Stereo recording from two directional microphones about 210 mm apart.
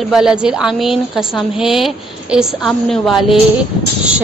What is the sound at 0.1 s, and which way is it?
A woman's voice, 5° right (ahead or behind).